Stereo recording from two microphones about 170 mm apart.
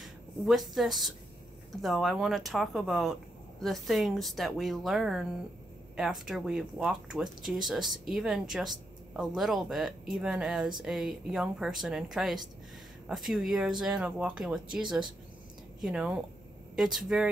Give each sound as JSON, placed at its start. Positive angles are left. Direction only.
{"t": 0.0, "sound": "speech", "side_deg": 0}